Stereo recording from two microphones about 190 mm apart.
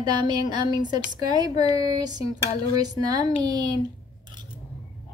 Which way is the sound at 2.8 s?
20° right (ahead or behind).